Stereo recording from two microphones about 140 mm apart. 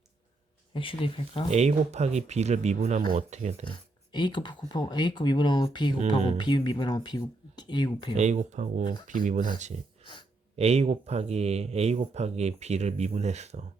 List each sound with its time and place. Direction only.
0.7 s speech: 40° left (ahead or behind)
1.5 s speech: 50° right (ahead or behind)
3.7 s speech: 35° left (ahead or behind)
6.0 s speech: 55° right (ahead or behind)
6.3 s speech: 35° left (ahead or behind)
8.1 s speech: 60° right (ahead or behind)
10.0 s a sound: 35° left (ahead or behind)
10.6 s speech: 50° right (ahead or behind)